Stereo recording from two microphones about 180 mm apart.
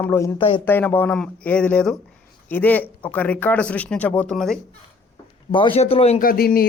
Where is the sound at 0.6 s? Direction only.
10° left (ahead or behind).